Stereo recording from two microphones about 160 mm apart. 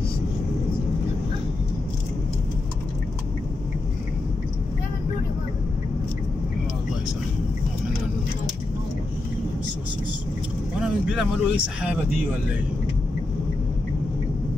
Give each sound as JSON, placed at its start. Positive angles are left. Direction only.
{"t": 10.8, "sound": "speech", "side_deg": -5}